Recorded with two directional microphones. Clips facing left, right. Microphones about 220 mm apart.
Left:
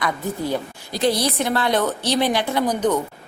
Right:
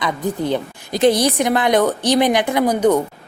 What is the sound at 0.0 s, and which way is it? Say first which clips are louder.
A woman's voice: right 3 dB; 20° right (ahead or behind).